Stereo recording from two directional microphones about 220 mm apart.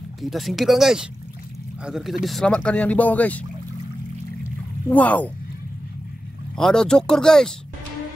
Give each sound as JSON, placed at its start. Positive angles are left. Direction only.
{"t": 0.2, "sound": "speech", "side_deg": 0}
{"t": 4.8, "sound": "speech", "side_deg": 5}
{"t": 6.5, "sound": "speech", "side_deg": 5}